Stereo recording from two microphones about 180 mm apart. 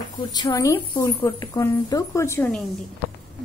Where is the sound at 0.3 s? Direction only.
20° left (ahead or behind).